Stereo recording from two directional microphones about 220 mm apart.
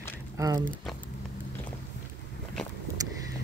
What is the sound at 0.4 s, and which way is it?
Speech, 15° right (ahead or behind).